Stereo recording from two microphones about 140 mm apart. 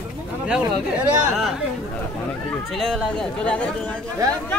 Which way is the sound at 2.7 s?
Centre (ahead or behind).